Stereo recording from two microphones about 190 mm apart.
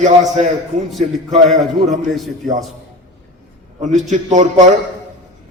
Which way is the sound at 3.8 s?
40° right (ahead or behind).